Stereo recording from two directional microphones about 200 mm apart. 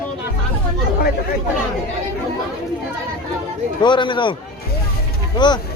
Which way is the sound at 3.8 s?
25° left (ahead or behind).